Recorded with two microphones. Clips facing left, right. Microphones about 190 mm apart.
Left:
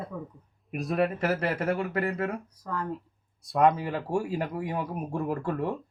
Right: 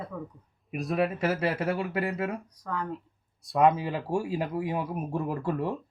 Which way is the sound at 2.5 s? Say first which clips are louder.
Even; 5° left (ahead or behind).